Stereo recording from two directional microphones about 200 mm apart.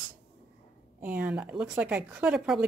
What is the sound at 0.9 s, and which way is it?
A woman's voice, 10° right (ahead or behind).